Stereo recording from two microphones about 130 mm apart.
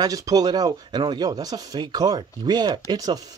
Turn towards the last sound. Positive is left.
turn(degrees=-30)  # may be behind; listen again after turning